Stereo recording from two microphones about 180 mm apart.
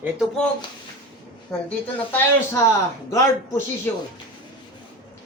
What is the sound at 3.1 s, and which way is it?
Speech, 15° left (ahead or behind).